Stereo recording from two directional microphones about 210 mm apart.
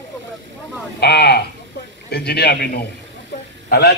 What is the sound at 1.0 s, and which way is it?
A man's voice, 50° left (ahead or behind).